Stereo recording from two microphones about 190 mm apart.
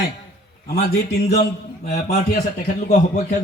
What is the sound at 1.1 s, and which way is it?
Speech, 60° left (ahead or behind).